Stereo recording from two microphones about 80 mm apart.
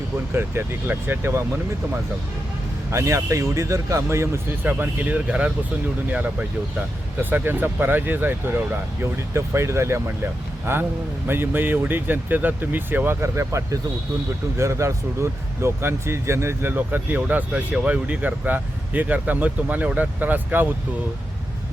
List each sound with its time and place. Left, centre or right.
0.3 s speech: right
2.9 s speech: right
4.6 s speech: right
7.2 s speech: right